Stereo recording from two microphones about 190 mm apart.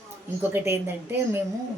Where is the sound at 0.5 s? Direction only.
15° right (ahead or behind).